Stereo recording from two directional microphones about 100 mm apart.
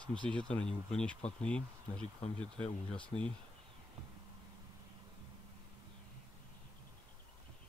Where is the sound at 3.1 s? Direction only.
40° left (ahead or behind).